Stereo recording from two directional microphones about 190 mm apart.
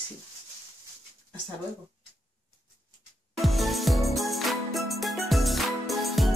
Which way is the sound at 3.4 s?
Centre (ahead or behind).